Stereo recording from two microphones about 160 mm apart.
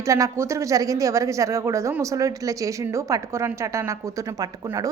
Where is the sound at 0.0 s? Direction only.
20° right (ahead or behind).